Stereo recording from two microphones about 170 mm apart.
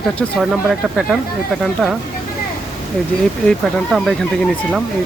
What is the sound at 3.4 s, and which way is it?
Speech, 5° left (ahead or behind).